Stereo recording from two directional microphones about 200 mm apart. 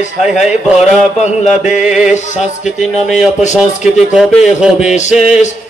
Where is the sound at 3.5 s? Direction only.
5° right (ahead or behind).